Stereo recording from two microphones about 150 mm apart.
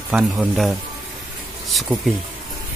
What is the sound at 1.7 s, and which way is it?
Speech, centre (ahead or behind).